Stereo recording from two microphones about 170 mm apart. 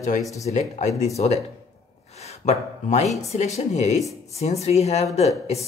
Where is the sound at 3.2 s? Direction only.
40° left (ahead or behind).